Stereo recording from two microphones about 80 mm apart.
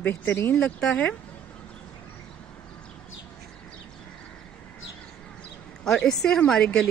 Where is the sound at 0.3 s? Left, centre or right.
Left.